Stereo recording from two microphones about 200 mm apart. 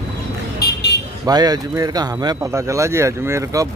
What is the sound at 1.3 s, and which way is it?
Speech, 20° right (ahead or behind).